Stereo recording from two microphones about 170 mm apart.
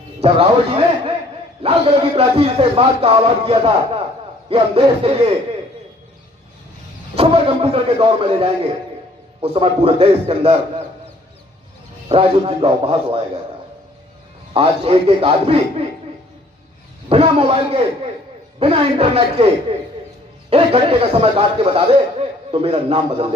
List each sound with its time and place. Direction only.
0.2 s speech: 35° right (ahead or behind)
7.2 s speech: 35° right (ahead or behind)
12.0 s speech: 35° right (ahead or behind)
14.5 s speech: 35° right (ahead or behind)
17.1 s speech: 35° right (ahead or behind)